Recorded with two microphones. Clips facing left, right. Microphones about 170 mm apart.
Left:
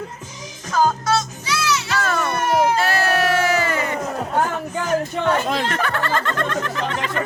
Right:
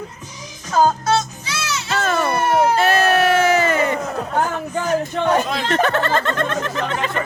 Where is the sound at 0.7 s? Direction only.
25° right (ahead or behind).